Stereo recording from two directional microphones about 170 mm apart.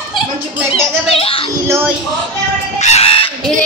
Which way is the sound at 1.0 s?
35° left (ahead or behind).